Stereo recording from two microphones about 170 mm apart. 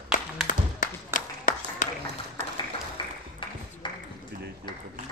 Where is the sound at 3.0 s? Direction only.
30° left (ahead or behind).